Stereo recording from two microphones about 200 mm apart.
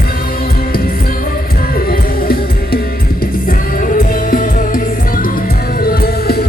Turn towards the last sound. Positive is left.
turn(degrees=50)  # may be behind; listen again after turning